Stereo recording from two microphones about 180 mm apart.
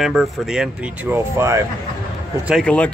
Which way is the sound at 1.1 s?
15° right (ahead or behind).